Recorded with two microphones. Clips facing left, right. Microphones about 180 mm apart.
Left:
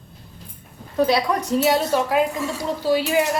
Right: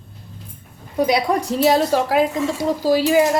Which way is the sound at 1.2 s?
35° right (ahead or behind).